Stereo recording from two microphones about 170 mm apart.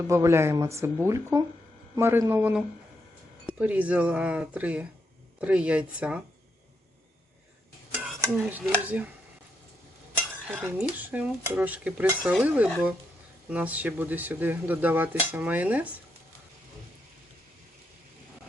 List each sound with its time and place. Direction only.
0.1 s speech: 15° right (ahead or behind)
7.9 s dishes: 10° right (ahead or behind)
8.7 s speech: 10° right (ahead or behind)
10.5 s speech: 10° right (ahead or behind)